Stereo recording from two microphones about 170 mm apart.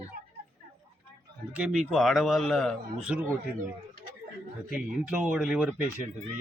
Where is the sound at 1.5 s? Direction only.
5° right (ahead or behind).